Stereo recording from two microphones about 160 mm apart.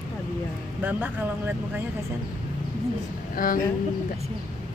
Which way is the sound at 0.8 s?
10° right (ahead or behind).